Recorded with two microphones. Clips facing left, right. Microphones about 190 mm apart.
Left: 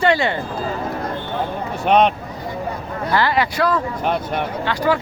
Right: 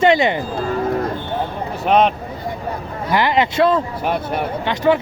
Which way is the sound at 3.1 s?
20° right (ahead or behind).